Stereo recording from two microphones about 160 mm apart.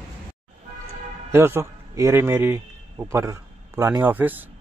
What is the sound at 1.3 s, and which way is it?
Speech, 15° right (ahead or behind).